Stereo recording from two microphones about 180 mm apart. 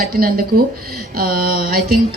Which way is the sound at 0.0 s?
55° right (ahead or behind).